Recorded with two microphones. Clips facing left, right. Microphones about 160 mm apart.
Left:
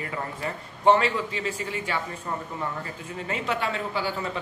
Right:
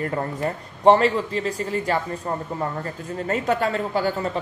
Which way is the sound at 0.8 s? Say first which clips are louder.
Right 5 dB; 35° right (ahead or behind).